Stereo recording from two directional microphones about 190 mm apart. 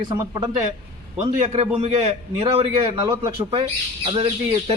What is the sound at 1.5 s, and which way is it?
Speech, 30° right (ahead or behind).